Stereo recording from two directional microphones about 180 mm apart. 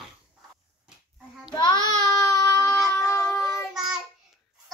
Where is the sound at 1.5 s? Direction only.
25° left (ahead or behind).